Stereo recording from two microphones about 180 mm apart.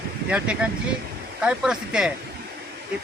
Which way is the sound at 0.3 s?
5° right (ahead or behind).